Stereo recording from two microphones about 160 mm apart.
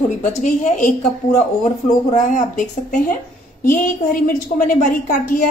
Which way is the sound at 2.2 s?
55° left (ahead or behind).